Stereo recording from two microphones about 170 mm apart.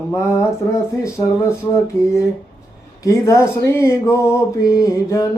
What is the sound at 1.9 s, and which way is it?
Speech, 15° left (ahead or behind).